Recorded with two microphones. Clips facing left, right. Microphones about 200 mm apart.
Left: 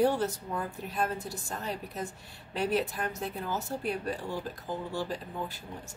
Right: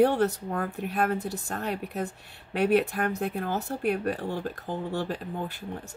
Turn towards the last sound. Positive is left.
turn(degrees=-60)  # may be behind; listen again after turning